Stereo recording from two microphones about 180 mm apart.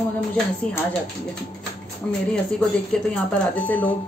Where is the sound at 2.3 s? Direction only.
5° left (ahead or behind).